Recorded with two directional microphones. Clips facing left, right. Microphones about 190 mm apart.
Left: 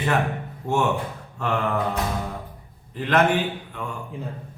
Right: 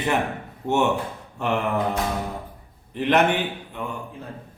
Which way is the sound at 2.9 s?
20° right (ahead or behind).